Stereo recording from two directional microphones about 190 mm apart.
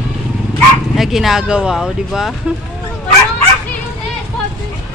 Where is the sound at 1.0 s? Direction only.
Centre (ahead or behind).